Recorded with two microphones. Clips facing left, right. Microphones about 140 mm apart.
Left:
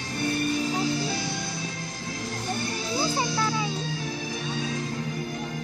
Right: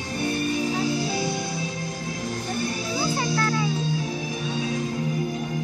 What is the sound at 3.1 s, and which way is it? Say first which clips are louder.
Music: right 2 dB; 10° left (ahead or behind).